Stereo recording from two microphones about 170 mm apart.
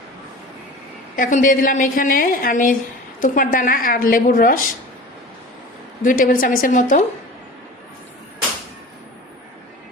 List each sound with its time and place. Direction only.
1.1 s a woman's voice: 50° left (ahead or behind)
6.0 s a woman's voice: 50° left (ahead or behind)